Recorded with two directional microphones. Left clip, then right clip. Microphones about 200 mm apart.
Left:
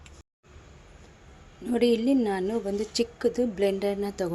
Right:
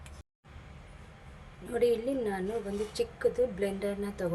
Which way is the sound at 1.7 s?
45° left (ahead or behind).